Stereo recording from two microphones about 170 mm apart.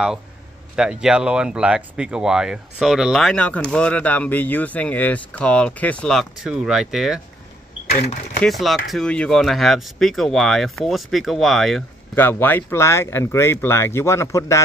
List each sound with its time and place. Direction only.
0.7 s speech: 5° right (ahead or behind)
7.9 s speech: 40° left (ahead or behind)
8.5 s speech: centre (ahead or behind)
12.2 s speech: 10° left (ahead or behind)